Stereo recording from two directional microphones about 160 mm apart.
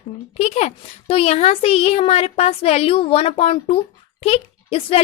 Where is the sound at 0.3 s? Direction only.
40° left (ahead or behind).